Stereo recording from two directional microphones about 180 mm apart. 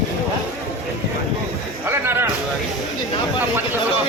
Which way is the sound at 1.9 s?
15° right (ahead or behind).